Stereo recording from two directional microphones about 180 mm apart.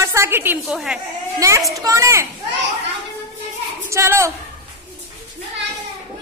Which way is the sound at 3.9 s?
15° right (ahead or behind).